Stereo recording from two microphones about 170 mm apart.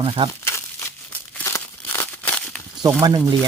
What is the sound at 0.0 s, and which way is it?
Speech, 30° right (ahead or behind).